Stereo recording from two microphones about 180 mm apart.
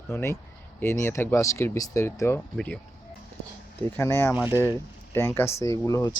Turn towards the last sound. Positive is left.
turn(degrees=15)  # may be behind; listen again after turning